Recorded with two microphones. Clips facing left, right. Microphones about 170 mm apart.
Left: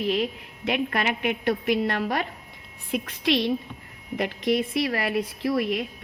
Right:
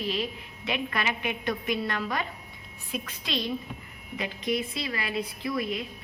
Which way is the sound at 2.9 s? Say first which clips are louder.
Left 9 dB; 65° left (ahead or behind).